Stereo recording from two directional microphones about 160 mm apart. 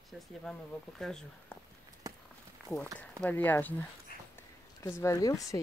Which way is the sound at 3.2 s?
10° left (ahead or behind).